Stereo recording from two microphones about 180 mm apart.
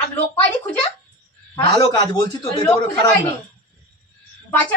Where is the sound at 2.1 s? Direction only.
25° left (ahead or behind).